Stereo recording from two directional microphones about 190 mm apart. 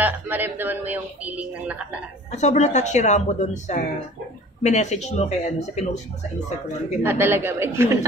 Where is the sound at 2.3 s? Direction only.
35° left (ahead or behind).